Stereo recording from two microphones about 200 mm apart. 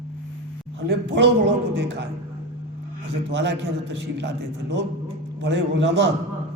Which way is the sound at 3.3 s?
60° right (ahead or behind).